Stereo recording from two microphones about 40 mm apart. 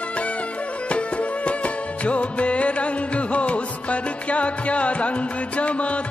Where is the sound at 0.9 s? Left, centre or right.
Left.